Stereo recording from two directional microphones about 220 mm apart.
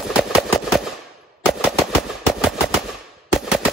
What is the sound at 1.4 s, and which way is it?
Machine gun, centre (ahead or behind).